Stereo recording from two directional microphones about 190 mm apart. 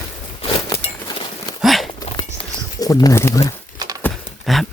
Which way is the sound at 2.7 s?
20° left (ahead or behind).